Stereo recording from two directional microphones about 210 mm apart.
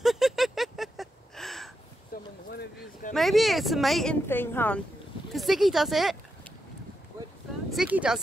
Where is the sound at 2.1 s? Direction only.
40° left (ahead or behind).